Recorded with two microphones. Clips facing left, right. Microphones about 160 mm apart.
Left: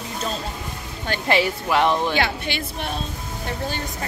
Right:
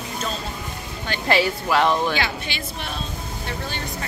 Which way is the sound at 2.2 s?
55° left (ahead or behind).